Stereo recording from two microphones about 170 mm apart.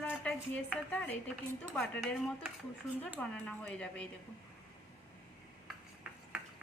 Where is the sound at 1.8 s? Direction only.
10° left (ahead or behind).